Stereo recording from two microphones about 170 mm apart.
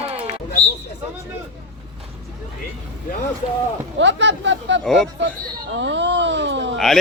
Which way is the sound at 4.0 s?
90° right.